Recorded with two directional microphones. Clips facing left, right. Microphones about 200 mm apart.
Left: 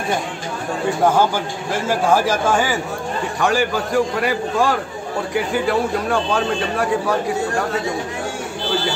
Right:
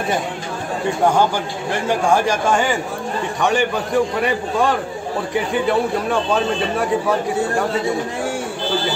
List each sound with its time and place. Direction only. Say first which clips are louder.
1.7 s speech: even; 5° left (ahead or behind)
5.5 s speech: right 2 dB; centre (ahead or behind)